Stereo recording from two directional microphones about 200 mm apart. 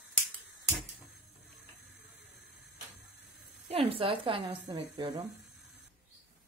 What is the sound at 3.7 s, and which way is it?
A woman's voice, 30° right (ahead or behind).